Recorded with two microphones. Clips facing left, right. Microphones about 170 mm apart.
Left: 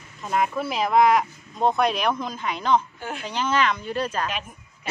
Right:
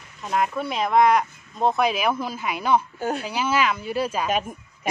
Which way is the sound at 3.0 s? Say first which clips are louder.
Right 7 dB; 40° right (ahead or behind).